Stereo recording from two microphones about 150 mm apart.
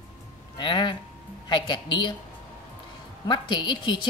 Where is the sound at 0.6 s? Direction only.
30° left (ahead or behind).